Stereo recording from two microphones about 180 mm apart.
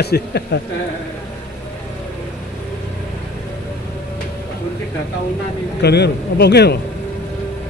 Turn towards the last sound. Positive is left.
turn(degrees=65)  # may be behind; listen again after turning